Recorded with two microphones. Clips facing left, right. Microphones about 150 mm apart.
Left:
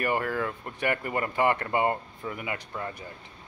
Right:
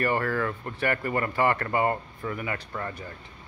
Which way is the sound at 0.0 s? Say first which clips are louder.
Right 2 dB; 15° left (ahead or behind).